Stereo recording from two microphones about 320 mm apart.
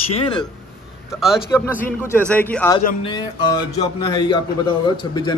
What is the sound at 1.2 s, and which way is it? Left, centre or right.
A man's voice, centre.